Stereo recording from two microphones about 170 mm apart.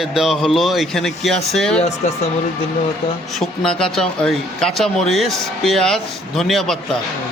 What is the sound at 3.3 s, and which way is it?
Speech, centre (ahead or behind).